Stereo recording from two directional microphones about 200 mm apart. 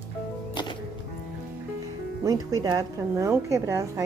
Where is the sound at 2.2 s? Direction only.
15° right (ahead or behind).